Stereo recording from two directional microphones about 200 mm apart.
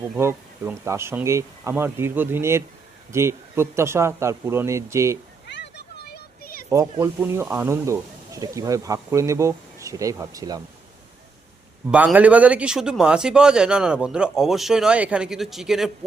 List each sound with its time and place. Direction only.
0.2 s speech: 15° right (ahead or behind)
5.5 s a sound: 60° left (ahead or behind)
7.0 s speech: 10° right (ahead or behind)
11.9 s speech: 5° right (ahead or behind)